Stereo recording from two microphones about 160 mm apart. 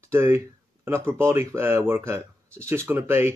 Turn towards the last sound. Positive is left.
turn(degrees=-15)  # may be behind; listen again after turning